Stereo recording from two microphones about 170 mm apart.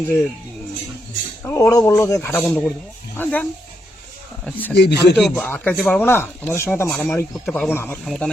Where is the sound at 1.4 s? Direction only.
15° left (ahead or behind).